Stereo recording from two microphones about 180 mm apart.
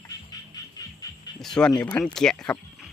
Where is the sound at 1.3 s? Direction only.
5° left (ahead or behind).